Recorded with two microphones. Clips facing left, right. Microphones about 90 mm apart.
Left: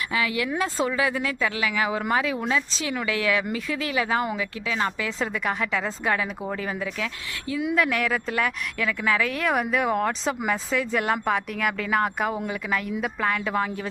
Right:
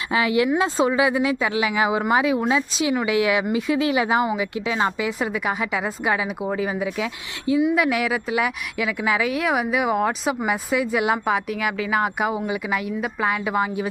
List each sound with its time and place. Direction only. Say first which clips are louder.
0.1 s a woman's voice: right 8 dB; 25° right (ahead or behind)
7.6 s a woman's voice: right 1 dB; 5° right (ahead or behind)